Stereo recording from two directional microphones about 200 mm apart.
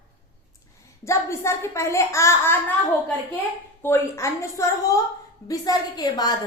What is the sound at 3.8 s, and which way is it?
A woman's voice, 10° left (ahead or behind).